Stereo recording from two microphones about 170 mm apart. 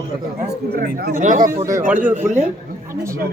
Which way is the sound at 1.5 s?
15° right (ahead or behind).